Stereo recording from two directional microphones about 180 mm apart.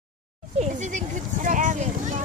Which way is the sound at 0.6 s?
40° right (ahead or behind).